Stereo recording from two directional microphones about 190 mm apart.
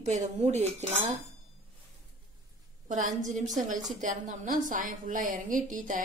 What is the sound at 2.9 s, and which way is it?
A woman's voice, 40° right (ahead or behind).